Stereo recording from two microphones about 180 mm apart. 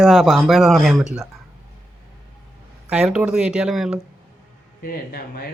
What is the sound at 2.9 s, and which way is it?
A man's voice, 5° right (ahead or behind).